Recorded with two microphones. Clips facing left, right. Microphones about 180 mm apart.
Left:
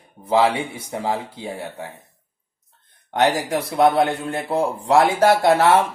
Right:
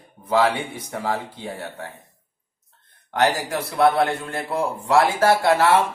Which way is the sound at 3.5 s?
15° left (ahead or behind).